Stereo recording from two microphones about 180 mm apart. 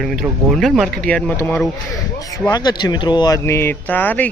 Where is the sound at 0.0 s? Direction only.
Centre (ahead or behind).